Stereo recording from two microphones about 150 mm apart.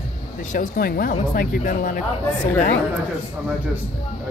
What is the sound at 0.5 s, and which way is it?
Speech, 75° left (ahead or behind).